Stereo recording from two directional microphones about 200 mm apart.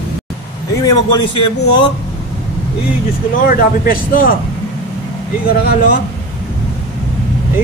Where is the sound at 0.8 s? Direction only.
20° left (ahead or behind).